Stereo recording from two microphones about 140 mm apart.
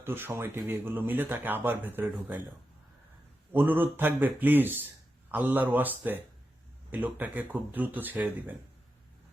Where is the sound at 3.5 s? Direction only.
15° right (ahead or behind).